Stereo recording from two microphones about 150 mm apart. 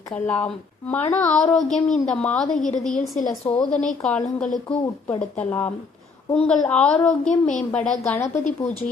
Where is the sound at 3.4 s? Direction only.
30° left (ahead or behind).